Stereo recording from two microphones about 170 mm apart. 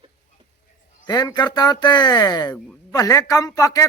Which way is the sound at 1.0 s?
25° left (ahead or behind).